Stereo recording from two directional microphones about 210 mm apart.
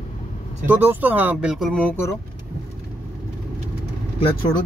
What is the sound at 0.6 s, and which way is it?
Speech, 10° right (ahead or behind).